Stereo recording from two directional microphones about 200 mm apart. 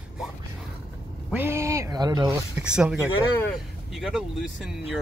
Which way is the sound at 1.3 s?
10° right (ahead or behind).